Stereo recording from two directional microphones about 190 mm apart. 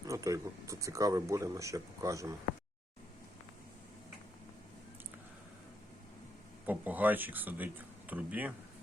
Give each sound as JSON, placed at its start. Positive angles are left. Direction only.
{"t": 0.0, "sound": "speech", "side_deg": -15}
{"t": 6.7, "sound": "speech", "side_deg": -10}